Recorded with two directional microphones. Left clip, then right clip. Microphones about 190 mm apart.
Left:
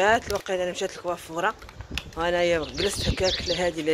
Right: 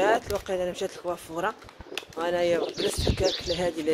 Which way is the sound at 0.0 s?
5° left (ahead or behind).